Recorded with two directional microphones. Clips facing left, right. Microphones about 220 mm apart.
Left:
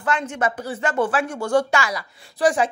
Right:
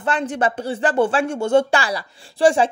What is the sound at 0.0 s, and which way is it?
Speech, 35° right (ahead or behind).